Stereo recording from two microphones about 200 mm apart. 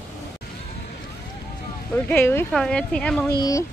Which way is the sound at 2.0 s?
10° left (ahead or behind).